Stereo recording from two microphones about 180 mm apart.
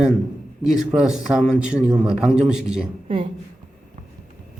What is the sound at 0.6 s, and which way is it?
A man's voice, centre (ahead or behind).